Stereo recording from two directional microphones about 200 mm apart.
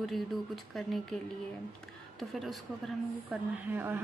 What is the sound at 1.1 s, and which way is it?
A woman's voice, centre (ahead or behind).